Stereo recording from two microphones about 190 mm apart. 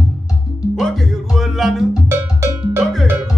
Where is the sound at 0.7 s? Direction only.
Centre (ahead or behind).